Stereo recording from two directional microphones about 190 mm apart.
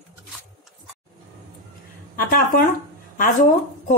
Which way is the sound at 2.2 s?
45° left (ahead or behind).